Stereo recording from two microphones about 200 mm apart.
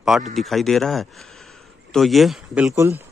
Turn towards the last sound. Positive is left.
turn(degrees=-15)  # may be behind; listen again after turning